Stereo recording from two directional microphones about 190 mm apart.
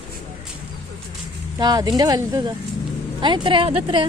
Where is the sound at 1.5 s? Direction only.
20° right (ahead or behind).